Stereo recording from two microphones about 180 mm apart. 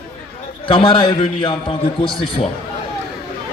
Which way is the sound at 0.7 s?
25° left (ahead or behind).